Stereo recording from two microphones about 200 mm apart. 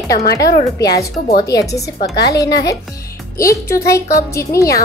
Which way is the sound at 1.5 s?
15° left (ahead or behind).